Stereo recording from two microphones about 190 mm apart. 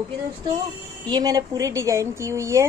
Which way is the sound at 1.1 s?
20° right (ahead or behind).